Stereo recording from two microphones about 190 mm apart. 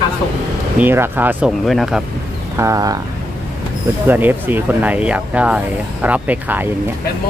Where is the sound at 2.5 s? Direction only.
15° right (ahead or behind).